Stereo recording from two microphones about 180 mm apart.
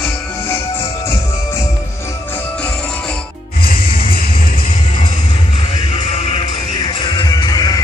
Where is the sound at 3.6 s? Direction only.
55° left (ahead or behind).